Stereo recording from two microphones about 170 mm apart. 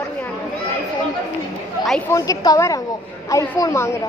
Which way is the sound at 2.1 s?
20° left (ahead or behind).